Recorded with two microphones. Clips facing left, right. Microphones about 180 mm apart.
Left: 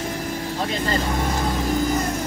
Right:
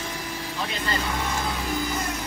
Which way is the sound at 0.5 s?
45° left (ahead or behind).